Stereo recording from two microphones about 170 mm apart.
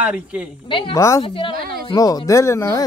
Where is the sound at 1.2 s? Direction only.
30° left (ahead or behind).